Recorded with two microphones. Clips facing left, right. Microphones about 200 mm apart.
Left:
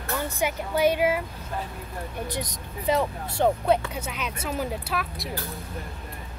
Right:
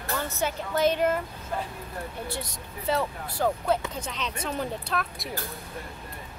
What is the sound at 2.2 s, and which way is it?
Speech, 15° left (ahead or behind).